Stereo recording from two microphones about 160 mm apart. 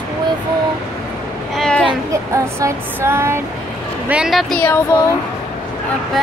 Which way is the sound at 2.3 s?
15° right (ahead or behind).